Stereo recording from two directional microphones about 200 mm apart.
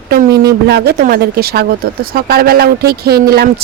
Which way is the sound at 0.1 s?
50° right (ahead or behind).